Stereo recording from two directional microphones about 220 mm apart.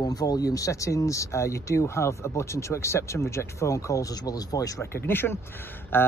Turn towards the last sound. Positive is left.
turn(degrees=10)  # may be behind; listen again after turning